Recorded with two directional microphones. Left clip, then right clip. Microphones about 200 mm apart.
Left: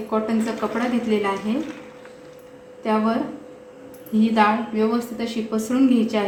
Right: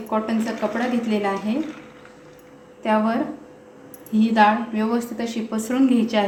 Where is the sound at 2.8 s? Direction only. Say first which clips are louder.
Right 1 dB; 30° right (ahead or behind).